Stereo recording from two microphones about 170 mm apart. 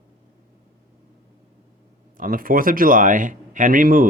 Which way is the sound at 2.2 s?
55° right (ahead or behind).